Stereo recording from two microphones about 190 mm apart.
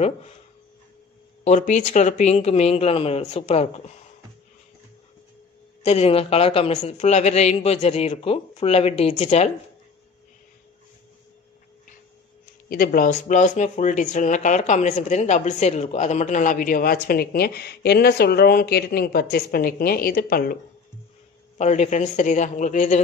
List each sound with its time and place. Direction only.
1.4 s speech: 40° left (ahead or behind)
5.9 s speech: 30° left (ahead or behind)
12.6 s speech: 50° left (ahead or behind)
21.5 s speech: 35° left (ahead or behind)